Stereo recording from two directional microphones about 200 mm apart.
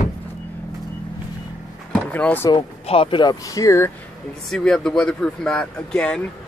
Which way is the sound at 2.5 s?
25° left (ahead or behind).